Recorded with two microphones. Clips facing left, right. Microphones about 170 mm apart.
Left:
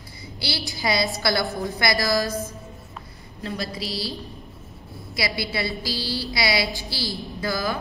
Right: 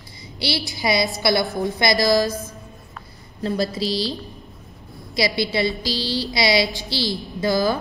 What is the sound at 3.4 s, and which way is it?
Speech, 35° right (ahead or behind).